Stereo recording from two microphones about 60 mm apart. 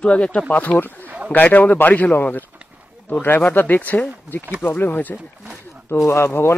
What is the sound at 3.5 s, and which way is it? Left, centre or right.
Speech, left.